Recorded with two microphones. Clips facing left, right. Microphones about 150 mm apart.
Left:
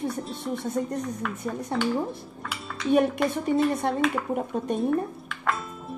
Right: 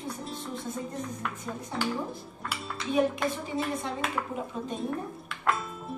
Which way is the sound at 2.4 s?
5° right (ahead or behind).